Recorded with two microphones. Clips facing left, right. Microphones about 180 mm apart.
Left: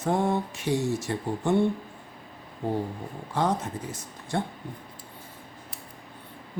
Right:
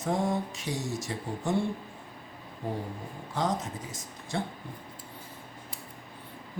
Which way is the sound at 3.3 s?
65° left (ahead or behind).